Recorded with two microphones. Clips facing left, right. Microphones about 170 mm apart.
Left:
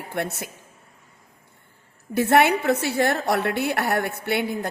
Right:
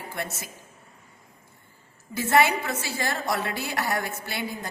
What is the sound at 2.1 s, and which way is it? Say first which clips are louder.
A woman's voice: left 4 dB; 60° left (ahead or behind).